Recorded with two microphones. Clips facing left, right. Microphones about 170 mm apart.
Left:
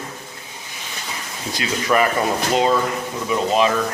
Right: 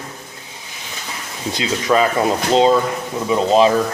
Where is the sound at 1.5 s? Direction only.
20° right (ahead or behind).